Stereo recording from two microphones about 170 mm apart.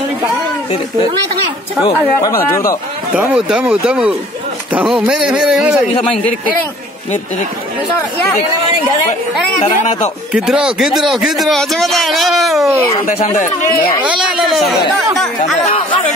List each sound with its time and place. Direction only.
2.5 s speech: 20° left (ahead or behind)
3.2 s a man's voice: 5° right (ahead or behind)
9.6 s speech: 40° left (ahead or behind)
10.3 s a man's voice: 5° right (ahead or behind)
13.0 s speech: 45° left (ahead or behind)
14.0 s a man's voice: 5° right (ahead or behind)
15.6 s speech: 30° left (ahead or behind)